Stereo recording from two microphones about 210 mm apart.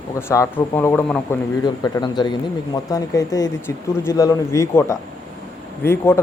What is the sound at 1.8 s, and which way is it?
Speech, 20° left (ahead or behind).